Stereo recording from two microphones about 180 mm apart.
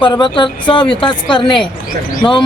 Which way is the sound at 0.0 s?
25° left (ahead or behind).